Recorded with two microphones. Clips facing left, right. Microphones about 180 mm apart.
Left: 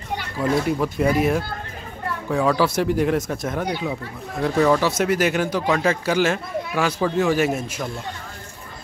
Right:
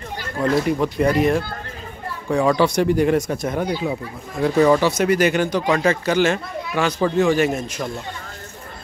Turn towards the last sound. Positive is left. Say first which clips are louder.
# right 1 dB
turn(degrees=5)  # may be behind; listen again after turning